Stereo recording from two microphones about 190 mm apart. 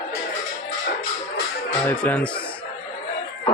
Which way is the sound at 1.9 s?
10° left (ahead or behind).